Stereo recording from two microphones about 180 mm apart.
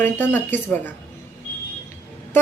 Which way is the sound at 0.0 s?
10° left (ahead or behind).